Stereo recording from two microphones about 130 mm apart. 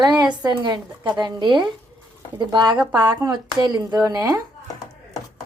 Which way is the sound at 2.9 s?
15° right (ahead or behind).